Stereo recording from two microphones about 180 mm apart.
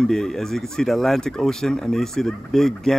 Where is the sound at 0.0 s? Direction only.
5° left (ahead or behind).